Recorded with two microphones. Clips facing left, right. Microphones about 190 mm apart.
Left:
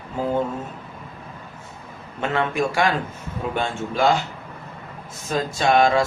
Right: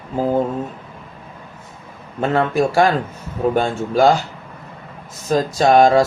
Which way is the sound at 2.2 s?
40° right (ahead or behind).